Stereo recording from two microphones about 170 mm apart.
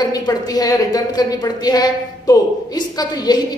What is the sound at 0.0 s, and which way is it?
A woman's voice, 20° left (ahead or behind).